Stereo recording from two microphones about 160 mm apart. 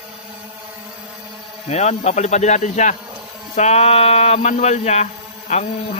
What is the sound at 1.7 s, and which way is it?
A man's voice, 45° left (ahead or behind).